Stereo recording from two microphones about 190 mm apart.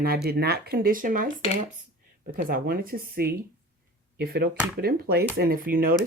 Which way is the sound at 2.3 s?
50° right (ahead or behind).